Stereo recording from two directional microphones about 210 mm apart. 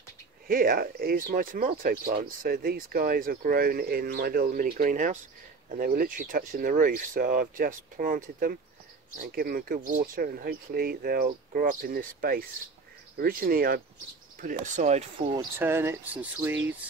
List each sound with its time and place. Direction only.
0.5 s speech: 45° right (ahead or behind)
15.3 s speech: 10° right (ahead or behind)